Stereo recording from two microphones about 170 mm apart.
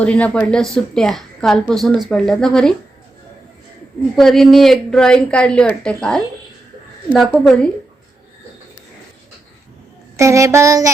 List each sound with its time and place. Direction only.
0.0 s a woman's voice: 10° left (ahead or behind)
4.1 s a woman's voice: centre (ahead or behind)
10.2 s a sound: 15° right (ahead or behind)